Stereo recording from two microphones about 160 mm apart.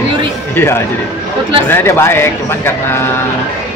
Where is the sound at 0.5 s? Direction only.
15° left (ahead or behind).